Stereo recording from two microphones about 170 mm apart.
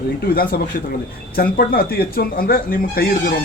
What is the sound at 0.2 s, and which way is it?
Speech, 65° left (ahead or behind).